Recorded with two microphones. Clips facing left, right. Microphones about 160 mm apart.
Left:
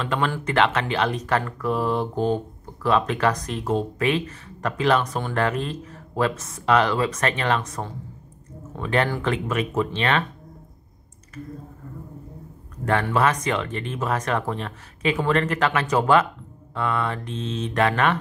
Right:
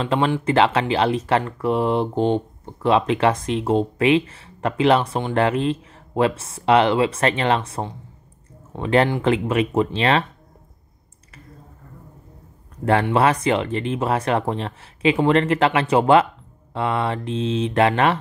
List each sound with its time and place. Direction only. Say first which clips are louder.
0.0 s speech: right 5 dB; 30° right (ahead or behind)
12.8 s speech: right 4 dB; 30° right (ahead or behind)